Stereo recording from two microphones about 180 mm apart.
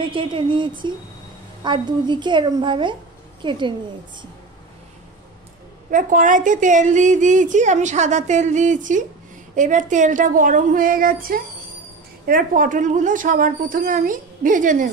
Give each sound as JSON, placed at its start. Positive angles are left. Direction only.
{"t": 0.0, "sound": "a woman's voice", "side_deg": -30}
{"t": 5.9, "sound": "a woman's voice", "side_deg": -45}